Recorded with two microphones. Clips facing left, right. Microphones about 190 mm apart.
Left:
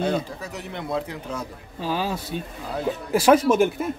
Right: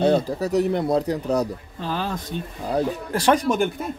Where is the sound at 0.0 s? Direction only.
35° right (ahead or behind).